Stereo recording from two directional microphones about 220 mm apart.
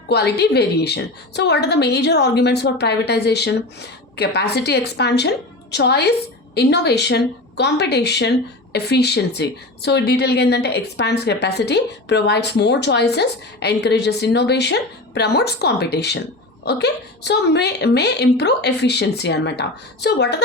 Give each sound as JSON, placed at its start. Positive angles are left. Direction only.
{"t": 0.1, "sound": "a woman's voice", "side_deg": 50}